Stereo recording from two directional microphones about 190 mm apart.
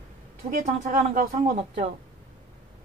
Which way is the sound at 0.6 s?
40° right (ahead or behind).